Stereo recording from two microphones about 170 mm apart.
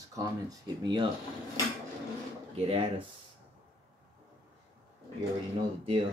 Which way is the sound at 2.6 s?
30° right (ahead or behind).